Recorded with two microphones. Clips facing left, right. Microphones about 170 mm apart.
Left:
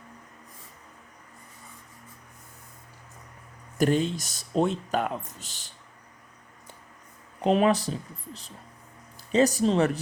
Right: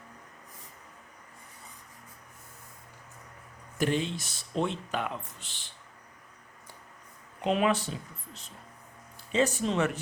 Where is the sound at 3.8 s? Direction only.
40° left (ahead or behind).